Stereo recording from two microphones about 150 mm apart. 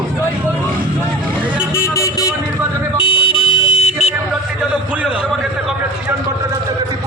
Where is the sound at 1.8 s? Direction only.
20° left (ahead or behind).